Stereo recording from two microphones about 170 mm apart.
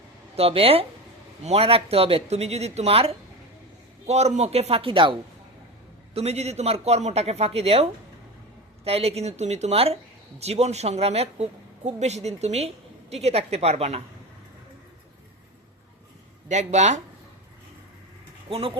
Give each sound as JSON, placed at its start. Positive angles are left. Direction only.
{"t": 0.3, "sound": "speech", "side_deg": -35}
{"t": 6.1, "sound": "speech", "side_deg": -40}
{"t": 16.5, "sound": "speech", "side_deg": -40}
{"t": 18.4, "sound": "speech", "side_deg": -30}